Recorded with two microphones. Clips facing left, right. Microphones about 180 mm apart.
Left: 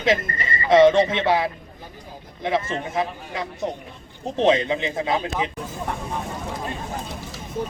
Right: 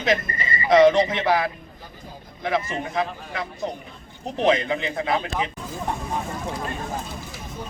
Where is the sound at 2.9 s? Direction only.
20° left (ahead or behind).